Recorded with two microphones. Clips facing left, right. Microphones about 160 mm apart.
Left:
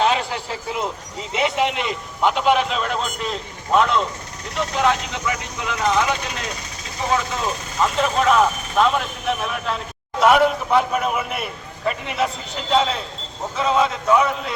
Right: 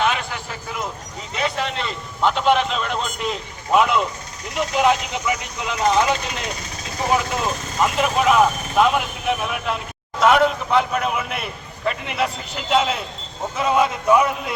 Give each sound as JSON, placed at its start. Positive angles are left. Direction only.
{"t": 0.0, "sound": "vehicle", "side_deg": 30}
{"t": 1.3, "sound": "a man's voice", "side_deg": 20}
{"t": 7.9, "sound": "speech", "side_deg": -10}
{"t": 10.2, "sound": "a man's voice", "side_deg": 5}